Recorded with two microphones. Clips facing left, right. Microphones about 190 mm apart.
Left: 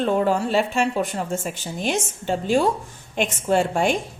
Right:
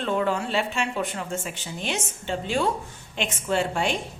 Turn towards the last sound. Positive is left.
turn(degrees=45)  # may be behind; listen again after turning